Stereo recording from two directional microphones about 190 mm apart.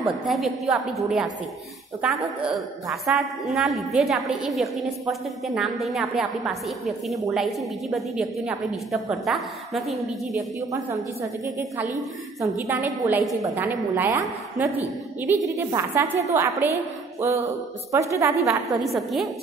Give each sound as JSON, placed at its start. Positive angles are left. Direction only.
{"t": 0.0, "sound": "a woman's voice", "side_deg": 0}
{"t": 11.4, "sound": "a woman's voice", "side_deg": -15}
{"t": 18.4, "sound": "a woman's voice", "side_deg": 0}